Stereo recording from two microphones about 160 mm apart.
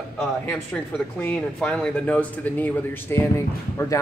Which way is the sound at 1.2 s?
5° left (ahead or behind).